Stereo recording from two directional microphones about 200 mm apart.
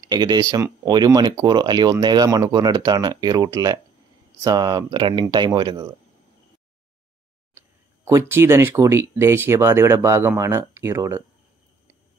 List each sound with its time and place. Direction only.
0.0 s speech: 20° right (ahead or behind)
7.5 s speech: 10° right (ahead or behind)